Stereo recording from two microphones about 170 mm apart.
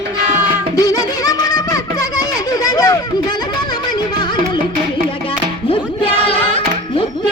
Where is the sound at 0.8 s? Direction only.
20° left (ahead or behind).